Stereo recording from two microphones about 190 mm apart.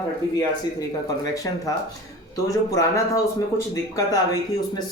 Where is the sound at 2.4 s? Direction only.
15° left (ahead or behind).